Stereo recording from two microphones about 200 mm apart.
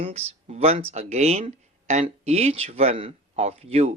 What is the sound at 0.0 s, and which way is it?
Speech, 30° right (ahead or behind).